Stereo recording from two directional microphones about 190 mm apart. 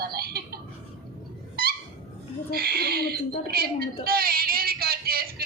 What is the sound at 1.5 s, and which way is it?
Dog, 50° right (ahead or behind).